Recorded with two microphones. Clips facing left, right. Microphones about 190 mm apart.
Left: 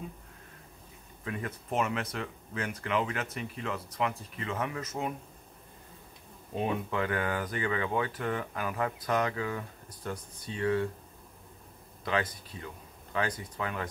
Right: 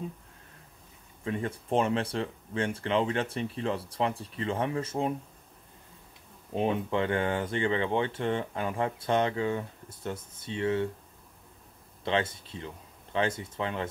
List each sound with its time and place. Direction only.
1.2 s speech: 30° right (ahead or behind)
6.5 s speech: 25° right (ahead or behind)
12.0 s speech: 25° right (ahead or behind)